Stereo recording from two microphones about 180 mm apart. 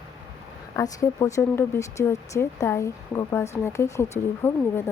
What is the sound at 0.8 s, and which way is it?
Speech, 15° left (ahead or behind).